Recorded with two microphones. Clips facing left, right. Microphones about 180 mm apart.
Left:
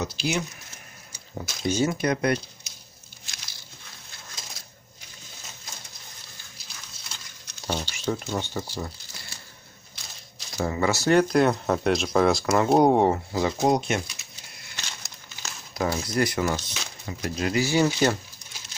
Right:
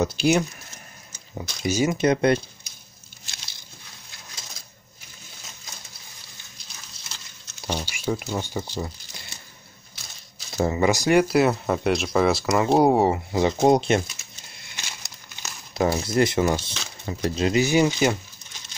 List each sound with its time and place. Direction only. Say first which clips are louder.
0.0 s speech: right 7 dB; 50° right (ahead or behind)
1.3 s speech: right 1 dB; 5° right (ahead or behind)
2.0 s speech: right 5 dB; 25° right (ahead or behind)
7.6 s speech: right 1 dB; 10° right (ahead or behind)
10.6 s speech: right 4 dB; 20° right (ahead or behind)
13.3 s speech: right 4 dB; 25° right (ahead or behind)
14.8 s crumpling: even; 10° right (ahead or behind)
15.7 s speech: right 4 dB; 25° right (ahead or behind)